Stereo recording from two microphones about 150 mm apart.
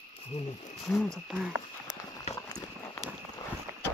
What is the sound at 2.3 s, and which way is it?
Horse, 25° left (ahead or behind).